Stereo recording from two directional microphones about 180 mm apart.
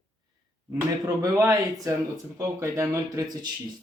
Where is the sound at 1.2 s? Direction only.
15° right (ahead or behind).